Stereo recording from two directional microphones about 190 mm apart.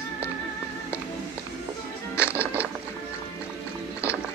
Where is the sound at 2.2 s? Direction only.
5° right (ahead or behind).